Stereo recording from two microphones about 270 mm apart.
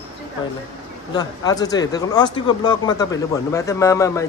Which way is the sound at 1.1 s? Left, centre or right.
Centre.